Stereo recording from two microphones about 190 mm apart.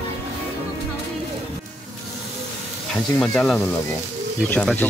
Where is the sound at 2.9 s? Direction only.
5° left (ahead or behind).